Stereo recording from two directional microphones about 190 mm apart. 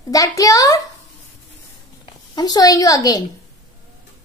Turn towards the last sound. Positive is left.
turn(degrees=20)  # may be behind; listen again after turning